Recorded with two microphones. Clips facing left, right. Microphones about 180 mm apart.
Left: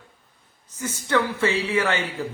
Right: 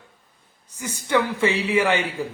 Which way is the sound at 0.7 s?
10° right (ahead or behind).